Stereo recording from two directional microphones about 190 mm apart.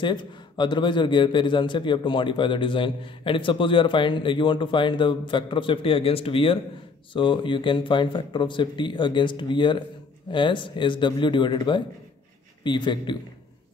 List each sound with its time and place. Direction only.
0.0 s a man's voice: 25° left (ahead or behind)